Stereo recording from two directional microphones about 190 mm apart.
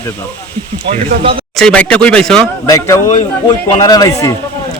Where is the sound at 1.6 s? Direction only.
5° left (ahead or behind).